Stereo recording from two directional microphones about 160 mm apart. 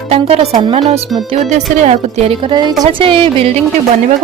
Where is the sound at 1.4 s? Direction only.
45° right (ahead or behind).